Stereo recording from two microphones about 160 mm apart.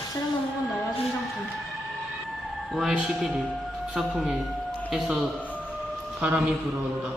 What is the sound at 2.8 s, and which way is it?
A man's voice, centre (ahead or behind).